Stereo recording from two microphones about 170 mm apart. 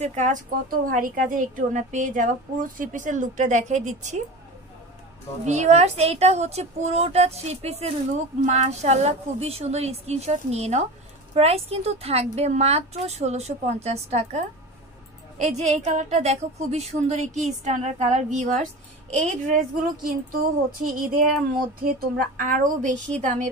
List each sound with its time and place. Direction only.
0.0 s speech: 45° right (ahead or behind)
0.7 s speech: 55° right (ahead or behind)
5.4 s speech: 40° right (ahead or behind)
15.5 s a woman's voice: 40° right (ahead or behind)